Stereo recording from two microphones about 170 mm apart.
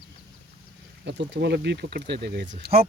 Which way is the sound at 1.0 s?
85° right.